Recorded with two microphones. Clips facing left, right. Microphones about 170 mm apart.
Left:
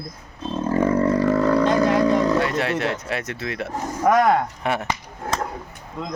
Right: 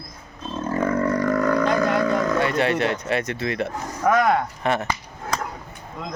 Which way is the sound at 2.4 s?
Centre (ahead or behind).